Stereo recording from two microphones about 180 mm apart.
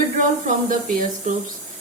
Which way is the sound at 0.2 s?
45° right (ahead or behind).